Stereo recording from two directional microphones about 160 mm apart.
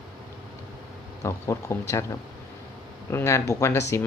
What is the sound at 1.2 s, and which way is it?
Speech, 15° left (ahead or behind).